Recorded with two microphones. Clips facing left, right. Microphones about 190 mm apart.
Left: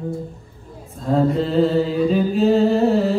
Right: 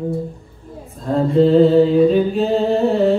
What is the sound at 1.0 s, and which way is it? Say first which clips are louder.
Mantra: right 4 dB; centre (ahead or behind).